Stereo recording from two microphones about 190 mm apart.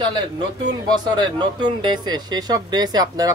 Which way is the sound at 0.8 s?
20° right (ahead or behind).